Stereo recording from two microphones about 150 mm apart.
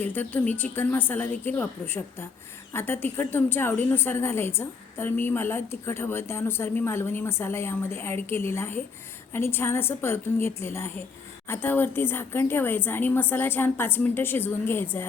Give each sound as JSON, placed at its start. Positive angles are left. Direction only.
{"t": 0.0, "sound": "a woman's voice", "side_deg": 15}